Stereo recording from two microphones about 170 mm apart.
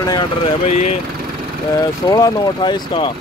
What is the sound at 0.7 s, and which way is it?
Speech, 45° left (ahead or behind).